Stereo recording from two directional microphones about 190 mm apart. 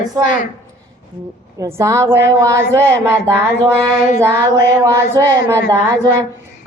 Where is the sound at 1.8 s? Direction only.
15° right (ahead or behind).